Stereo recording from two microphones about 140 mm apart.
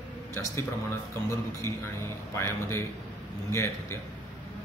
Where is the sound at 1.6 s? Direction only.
20° left (ahead or behind).